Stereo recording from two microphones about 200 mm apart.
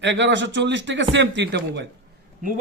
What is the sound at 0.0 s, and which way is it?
Speech, 65° right (ahead or behind).